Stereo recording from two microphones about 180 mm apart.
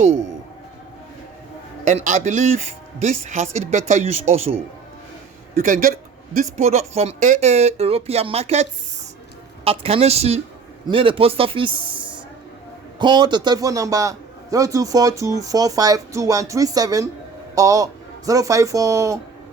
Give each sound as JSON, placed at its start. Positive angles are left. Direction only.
{"t": 1.8, "sound": "a man's voice", "side_deg": -45}
{"t": 5.6, "sound": "speech", "side_deg": -50}
{"t": 6.3, "sound": "a man's voice", "side_deg": -40}
{"t": 9.6, "sound": "a man's voice", "side_deg": -35}
{"t": 13.0, "sound": "a man's voice", "side_deg": -25}